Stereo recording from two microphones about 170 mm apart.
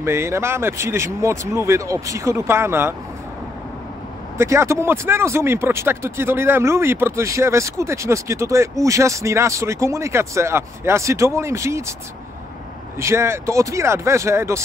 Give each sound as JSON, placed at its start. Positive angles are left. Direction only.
{"t": 0.0, "sound": "speech", "side_deg": -15}
{"t": 4.4, "sound": "speech", "side_deg": -15}
{"t": 12.9, "sound": "speech", "side_deg": -15}